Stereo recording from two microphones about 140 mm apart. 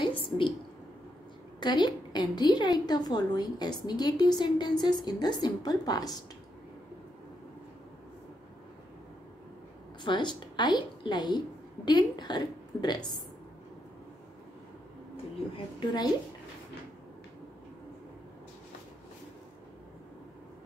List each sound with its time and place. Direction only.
0.0 s a sound: 35° left (ahead or behind)
1.6 s a woman's voice: 30° left (ahead or behind)
10.0 s a woman's voice: 35° left (ahead or behind)
15.5 s a woman's voice: 30° left (ahead or behind)